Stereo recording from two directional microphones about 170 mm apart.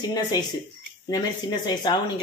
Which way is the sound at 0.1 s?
25° left (ahead or behind).